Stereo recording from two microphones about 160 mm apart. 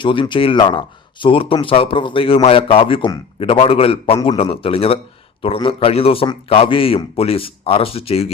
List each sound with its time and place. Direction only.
0.0 s a man's voice: 30° left (ahead or behind)